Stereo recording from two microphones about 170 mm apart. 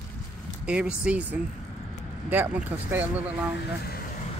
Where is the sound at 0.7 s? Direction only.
5° right (ahead or behind).